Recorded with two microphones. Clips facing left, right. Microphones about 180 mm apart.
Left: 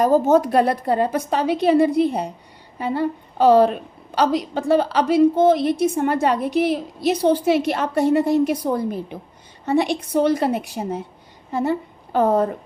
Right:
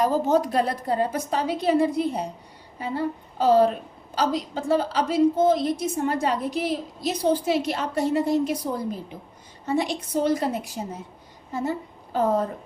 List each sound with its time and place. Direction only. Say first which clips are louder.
0.0 s a woman's voice: left 5 dB; 50° left (ahead or behind); by 12.5 s 65° left (ahead or behind)